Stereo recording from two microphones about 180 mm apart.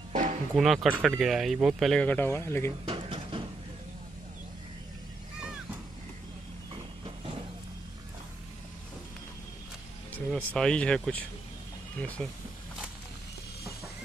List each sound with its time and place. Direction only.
0.1 s music: 45° right (ahead or behind)
0.6 s speech: 5° right (ahead or behind); by 2.7 s 15° left (ahead or behind)
2.8 s dishes: 30° right (ahead or behind)
10.1 s speech: 5° left (ahead or behind)